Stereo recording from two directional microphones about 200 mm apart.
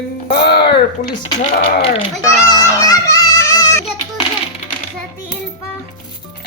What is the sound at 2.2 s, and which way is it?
Music, 15° left (ahead or behind).